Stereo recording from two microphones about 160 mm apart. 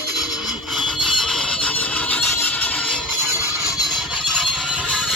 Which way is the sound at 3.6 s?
Centre (ahead or behind).